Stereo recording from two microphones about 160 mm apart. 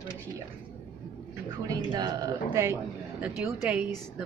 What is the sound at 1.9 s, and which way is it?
Speech, 25° right (ahead or behind).